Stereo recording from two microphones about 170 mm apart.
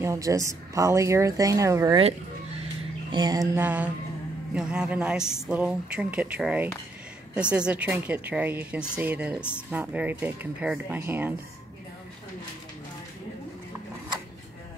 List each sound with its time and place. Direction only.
0.0 s speech: 20° right (ahead or behind)
3.1 s speech: 20° right (ahead or behind)
3.6 s speech: 10° right (ahead or behind)